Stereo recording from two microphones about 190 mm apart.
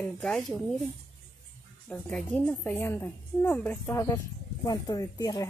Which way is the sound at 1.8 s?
5° left (ahead or behind).